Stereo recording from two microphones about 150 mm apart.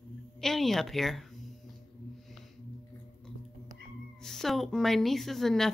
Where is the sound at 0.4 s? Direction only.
Centre (ahead or behind).